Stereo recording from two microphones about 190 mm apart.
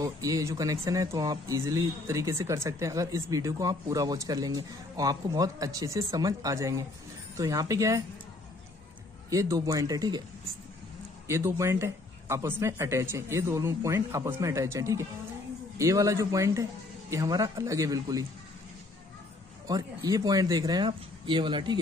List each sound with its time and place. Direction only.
0.0 s speech: 20° right (ahead or behind)
9.3 s speech: 15° right (ahead or behind)
11.2 s speech: 15° right (ahead or behind)
19.7 s speech: 20° right (ahead or behind)